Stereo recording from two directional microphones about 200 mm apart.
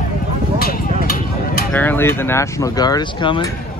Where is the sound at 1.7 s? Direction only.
10° left (ahead or behind).